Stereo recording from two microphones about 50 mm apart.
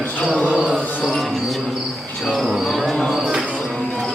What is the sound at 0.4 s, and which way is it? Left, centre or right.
Insect, right.